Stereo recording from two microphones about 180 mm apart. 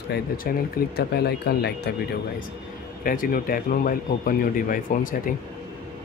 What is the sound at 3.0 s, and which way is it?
Speech, 50° left (ahead or behind).